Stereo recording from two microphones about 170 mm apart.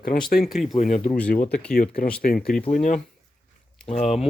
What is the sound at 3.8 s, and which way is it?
Speech, 40° left (ahead or behind).